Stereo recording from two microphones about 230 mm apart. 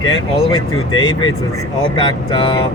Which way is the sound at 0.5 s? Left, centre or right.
Centre.